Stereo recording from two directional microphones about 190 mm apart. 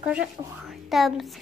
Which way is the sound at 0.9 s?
Centre (ahead or behind).